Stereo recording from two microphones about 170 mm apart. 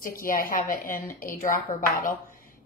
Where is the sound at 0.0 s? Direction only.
55° left (ahead or behind).